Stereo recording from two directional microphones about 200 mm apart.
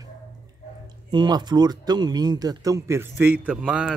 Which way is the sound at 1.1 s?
20° right (ahead or behind).